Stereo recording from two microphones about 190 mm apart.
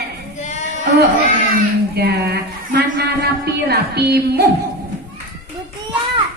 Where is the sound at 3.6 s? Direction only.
60° right (ahead or behind).